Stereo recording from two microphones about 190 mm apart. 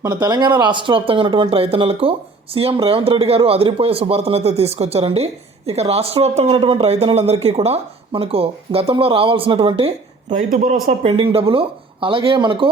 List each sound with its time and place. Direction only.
0.0 s speech: 20° right (ahead or behind)
10.3 s speech: 45° right (ahead or behind)
11.0 s speech: 30° right (ahead or behind)